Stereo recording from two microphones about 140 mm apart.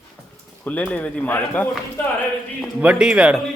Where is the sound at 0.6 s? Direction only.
10° left (ahead or behind).